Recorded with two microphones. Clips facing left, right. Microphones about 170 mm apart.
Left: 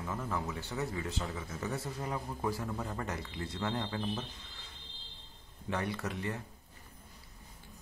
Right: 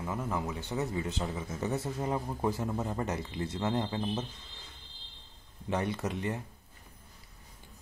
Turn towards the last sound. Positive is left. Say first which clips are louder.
# right 4 dB
turn(degrees=-20)  # may be behind; listen again after turning